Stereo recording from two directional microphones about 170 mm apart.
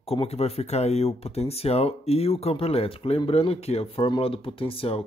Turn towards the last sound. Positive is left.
turn(degrees=35)  # may be behind; listen again after turning